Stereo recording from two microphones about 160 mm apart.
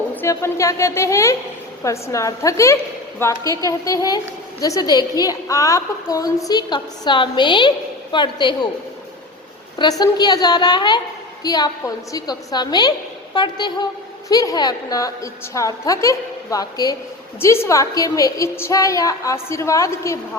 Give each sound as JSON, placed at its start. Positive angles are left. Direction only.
{"t": 0.2, "sound": "a woman's voice", "side_deg": 15}
{"t": 9.7, "sound": "a woman's voice", "side_deg": 25}